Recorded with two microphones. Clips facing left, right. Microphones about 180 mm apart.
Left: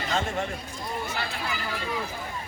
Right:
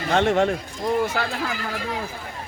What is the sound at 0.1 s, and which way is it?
Speech, 75° right (ahead or behind).